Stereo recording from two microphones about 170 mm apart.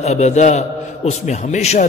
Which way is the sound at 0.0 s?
40° left (ahead or behind).